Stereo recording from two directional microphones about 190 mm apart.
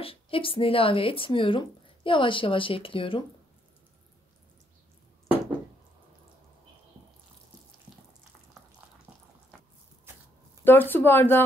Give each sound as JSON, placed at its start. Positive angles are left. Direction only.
{"t": 0.0, "sound": "speech", "side_deg": 30}
{"t": 10.6, "sound": "speech", "side_deg": 10}